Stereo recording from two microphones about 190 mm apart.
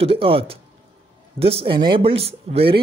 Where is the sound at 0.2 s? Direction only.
30° right (ahead or behind).